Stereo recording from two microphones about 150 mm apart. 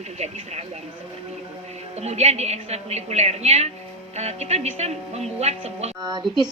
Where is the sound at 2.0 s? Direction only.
45° right (ahead or behind).